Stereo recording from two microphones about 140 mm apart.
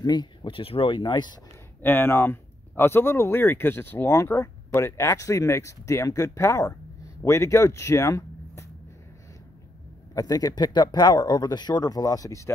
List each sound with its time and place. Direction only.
0.0 s speech: 30° left (ahead or behind)
1.8 s speech: 15° left (ahead or behind)
10.1 s speech: 25° left (ahead or behind)